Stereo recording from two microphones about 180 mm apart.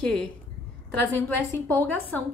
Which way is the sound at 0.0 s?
5° left (ahead or behind).